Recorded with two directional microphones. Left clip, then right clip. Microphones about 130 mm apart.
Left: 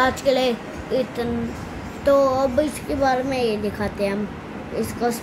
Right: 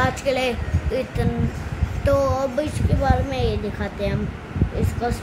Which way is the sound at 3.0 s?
15° left (ahead or behind).